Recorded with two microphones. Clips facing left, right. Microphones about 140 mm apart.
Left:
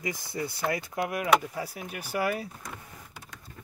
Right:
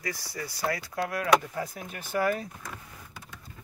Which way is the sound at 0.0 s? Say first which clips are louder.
Left 3 dB; 20° left (ahead or behind).